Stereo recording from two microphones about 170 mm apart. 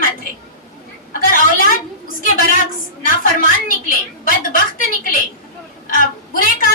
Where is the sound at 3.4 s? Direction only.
55° left (ahead or behind).